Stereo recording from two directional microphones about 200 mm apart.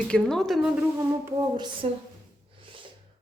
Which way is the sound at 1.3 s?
20° right (ahead or behind).